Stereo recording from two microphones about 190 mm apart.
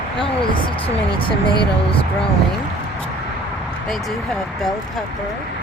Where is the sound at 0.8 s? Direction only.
25° left (ahead or behind).